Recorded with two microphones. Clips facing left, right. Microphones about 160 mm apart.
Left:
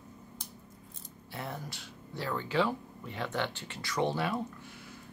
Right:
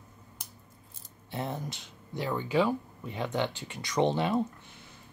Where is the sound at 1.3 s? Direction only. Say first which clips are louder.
Right 5 dB; 20° right (ahead or behind).